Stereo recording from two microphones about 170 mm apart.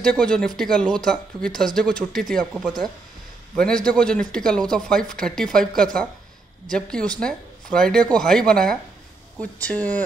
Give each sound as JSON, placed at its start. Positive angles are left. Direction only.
{"t": 0.0, "sound": "speech", "side_deg": 5}